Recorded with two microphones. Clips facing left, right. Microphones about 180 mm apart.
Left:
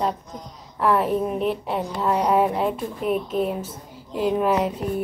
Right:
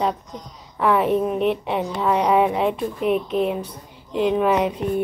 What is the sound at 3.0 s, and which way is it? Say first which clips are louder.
Speech: right 2 dB; 65° right (ahead or behind).